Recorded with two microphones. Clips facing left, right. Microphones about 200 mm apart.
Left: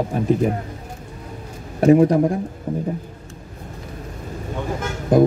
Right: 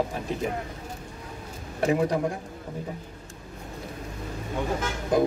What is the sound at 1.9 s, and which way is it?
Speech, 50° left (ahead or behind).